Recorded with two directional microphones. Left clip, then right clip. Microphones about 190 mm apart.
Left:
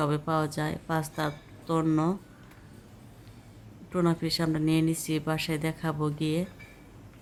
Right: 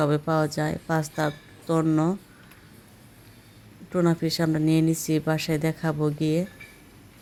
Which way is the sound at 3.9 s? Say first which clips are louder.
Right 4 dB; 15° right (ahead or behind).